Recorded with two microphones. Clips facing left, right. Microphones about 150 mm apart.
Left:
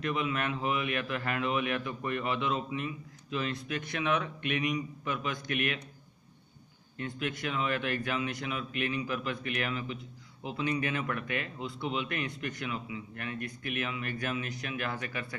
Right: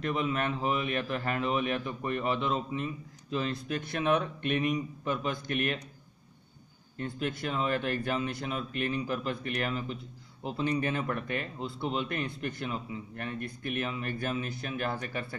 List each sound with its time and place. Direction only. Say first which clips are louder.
0.0 s a man's voice: right 2 dB; 35° right (ahead or behind)
7.0 s a man's voice: right 2 dB; 40° right (ahead or behind)